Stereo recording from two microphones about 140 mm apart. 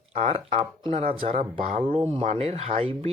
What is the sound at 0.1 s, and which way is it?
Speech, 50° right (ahead or behind).